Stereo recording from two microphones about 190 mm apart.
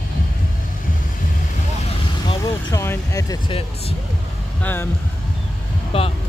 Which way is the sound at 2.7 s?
15° left (ahead or behind).